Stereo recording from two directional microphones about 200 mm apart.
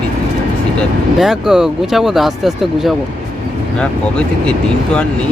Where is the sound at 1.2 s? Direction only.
Centre (ahead or behind).